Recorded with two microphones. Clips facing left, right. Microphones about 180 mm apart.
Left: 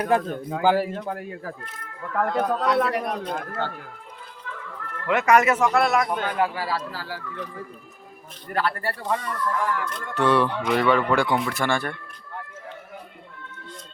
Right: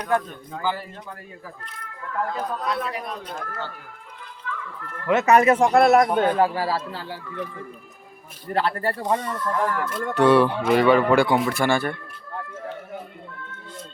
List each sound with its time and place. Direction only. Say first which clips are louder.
0.0 s speech: left 2 dB; 55° left (ahead or behind)
5.0 s a man's voice: right 2 dB; 25° right (ahead or behind)
5.8 s speech: right 6 dB; 50° right (ahead or behind)
6.1 s a man's voice: right 5 dB; 30° right (ahead or behind)
8.4 s a man's voice: right 3 dB; 30° right (ahead or behind)
9.6 s speech: right 2 dB; 40° right (ahead or behind)
10.2 s speech: right 4 dB; 10° right (ahead or behind)